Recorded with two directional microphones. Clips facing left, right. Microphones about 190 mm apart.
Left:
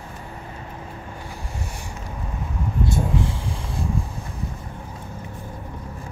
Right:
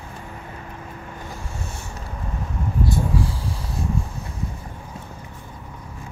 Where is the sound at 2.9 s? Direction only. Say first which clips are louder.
Left 1 dB; 25° left (ahead or behind).